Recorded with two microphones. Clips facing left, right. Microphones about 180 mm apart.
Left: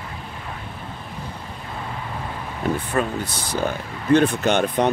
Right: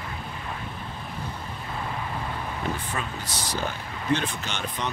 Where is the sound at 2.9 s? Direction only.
55° left (ahead or behind).